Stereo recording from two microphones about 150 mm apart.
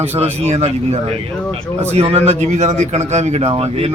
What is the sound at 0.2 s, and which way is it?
Speech, 45° right (ahead or behind).